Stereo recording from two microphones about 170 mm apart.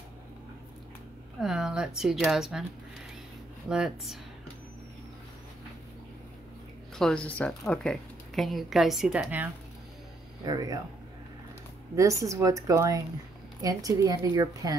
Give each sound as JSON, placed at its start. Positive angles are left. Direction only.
{"t": 1.4, "sound": "a woman's voice", "side_deg": -5}
{"t": 3.6, "sound": "a woman's voice", "side_deg": -5}
{"t": 7.0, "sound": "a woman's voice", "side_deg": 5}
{"t": 10.4, "sound": "a woman's voice", "side_deg": -20}
{"t": 11.9, "sound": "a woman's voice", "side_deg": -20}